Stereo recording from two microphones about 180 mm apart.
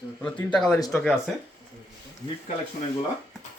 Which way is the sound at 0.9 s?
Centre (ahead or behind).